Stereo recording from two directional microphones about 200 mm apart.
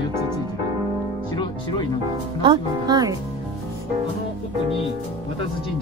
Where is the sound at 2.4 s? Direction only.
20° right (ahead or behind).